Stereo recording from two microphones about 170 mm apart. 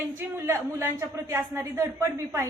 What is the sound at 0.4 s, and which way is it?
A woman's voice, 15° right (ahead or behind).